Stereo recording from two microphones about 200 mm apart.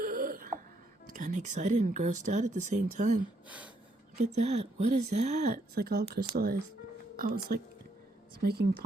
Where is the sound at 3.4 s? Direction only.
5° right (ahead or behind).